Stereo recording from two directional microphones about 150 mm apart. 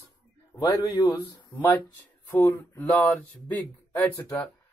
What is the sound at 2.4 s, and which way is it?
Speech, 10° left (ahead or behind).